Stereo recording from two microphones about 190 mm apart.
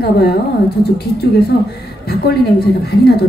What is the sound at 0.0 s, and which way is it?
Speech, 55° left (ahead or behind).